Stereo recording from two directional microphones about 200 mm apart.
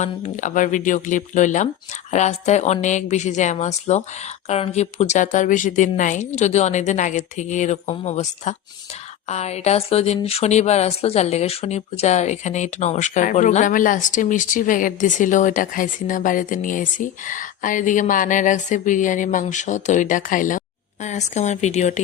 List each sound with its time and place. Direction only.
0.0 s speech: 40° left (ahead or behind)